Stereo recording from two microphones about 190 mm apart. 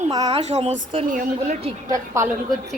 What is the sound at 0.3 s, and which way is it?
Speech, 35° right (ahead or behind).